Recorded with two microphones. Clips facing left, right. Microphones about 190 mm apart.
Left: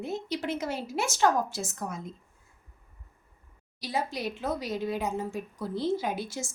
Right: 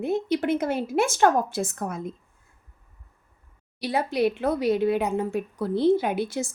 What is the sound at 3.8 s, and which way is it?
Speech, 60° right (ahead or behind).